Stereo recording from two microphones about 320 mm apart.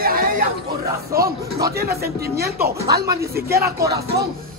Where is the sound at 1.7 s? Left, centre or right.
Right.